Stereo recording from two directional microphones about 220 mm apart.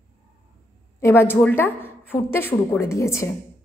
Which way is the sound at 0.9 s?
10° left (ahead or behind).